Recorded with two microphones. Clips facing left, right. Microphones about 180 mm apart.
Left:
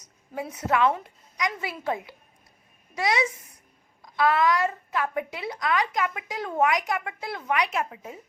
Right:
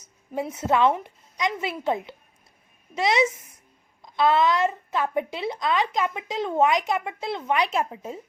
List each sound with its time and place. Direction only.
0.0 s a woman's voice: 25° right (ahead or behind)